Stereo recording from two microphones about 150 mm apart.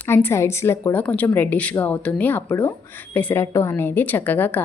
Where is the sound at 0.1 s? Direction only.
15° left (ahead or behind).